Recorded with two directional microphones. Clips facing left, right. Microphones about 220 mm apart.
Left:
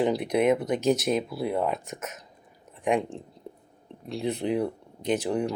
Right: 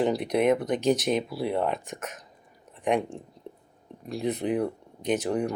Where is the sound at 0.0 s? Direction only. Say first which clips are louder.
Even; 5° left (ahead or behind).